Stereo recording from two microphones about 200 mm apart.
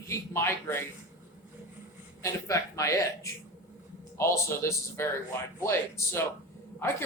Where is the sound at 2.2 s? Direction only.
15° left (ahead or behind).